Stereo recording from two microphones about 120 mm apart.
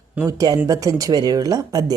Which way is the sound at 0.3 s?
30° right (ahead or behind).